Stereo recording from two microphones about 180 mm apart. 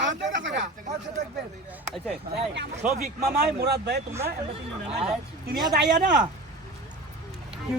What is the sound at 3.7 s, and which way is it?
Speech, 65° right (ahead or behind).